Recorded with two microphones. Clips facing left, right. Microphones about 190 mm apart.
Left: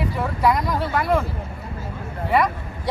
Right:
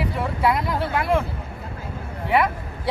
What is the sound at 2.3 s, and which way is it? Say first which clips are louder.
Vehicle: even; 5° right (ahead or behind).